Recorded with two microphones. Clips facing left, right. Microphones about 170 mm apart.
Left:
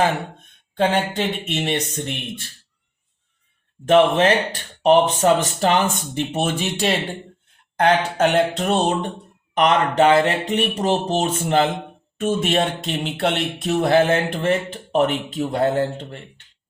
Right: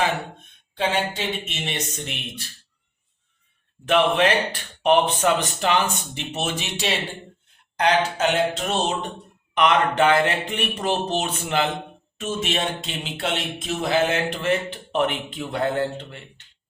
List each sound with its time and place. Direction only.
0.8 s speech: 55° left (ahead or behind)
3.8 s speech: 45° left (ahead or behind)
9.6 s speech: 45° left (ahead or behind)
12.1 s speech: 55° left (ahead or behind)